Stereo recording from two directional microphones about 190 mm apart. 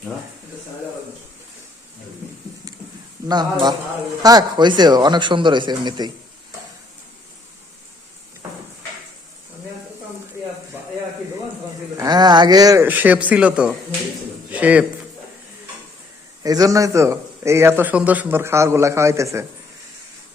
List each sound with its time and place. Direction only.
3.2 s speech: 20° right (ahead or behind)
11.9 s a man's voice: 20° right (ahead or behind)
16.4 s a man's voice: 20° right (ahead or behind)